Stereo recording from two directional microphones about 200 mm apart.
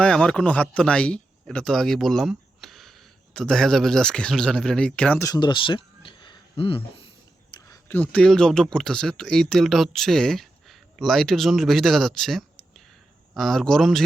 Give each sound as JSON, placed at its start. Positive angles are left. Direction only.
{"t": 0.0, "sound": "speech", "side_deg": 5}
{"t": 5.3, "sound": "speech", "side_deg": 25}
{"t": 7.5, "sound": "speech", "side_deg": 15}